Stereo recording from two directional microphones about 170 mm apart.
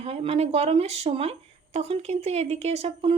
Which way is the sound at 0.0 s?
35° right (ahead or behind).